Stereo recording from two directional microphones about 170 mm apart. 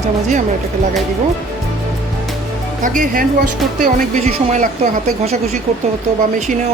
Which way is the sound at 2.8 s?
50° right (ahead or behind).